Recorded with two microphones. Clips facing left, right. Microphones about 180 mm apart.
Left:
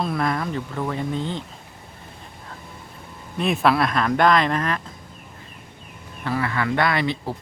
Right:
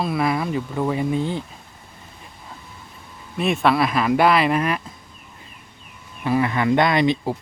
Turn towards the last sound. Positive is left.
turn(degrees=-20)  # may be behind; listen again after turning